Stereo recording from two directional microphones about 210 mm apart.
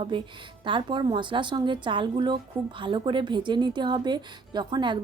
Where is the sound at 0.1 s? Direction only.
20° right (ahead or behind).